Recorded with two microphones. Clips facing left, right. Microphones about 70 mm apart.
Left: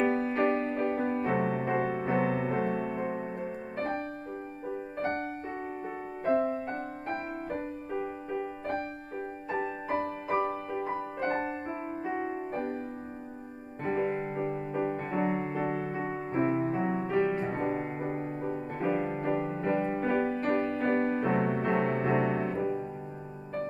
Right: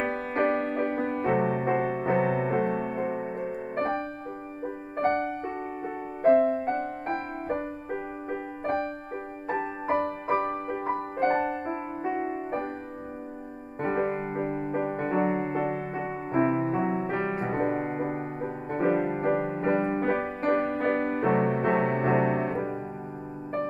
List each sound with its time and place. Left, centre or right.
0.0 s music: right
13.8 s music: right